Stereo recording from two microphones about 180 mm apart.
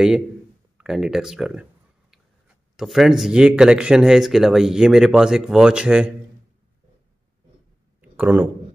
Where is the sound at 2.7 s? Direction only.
Centre (ahead or behind).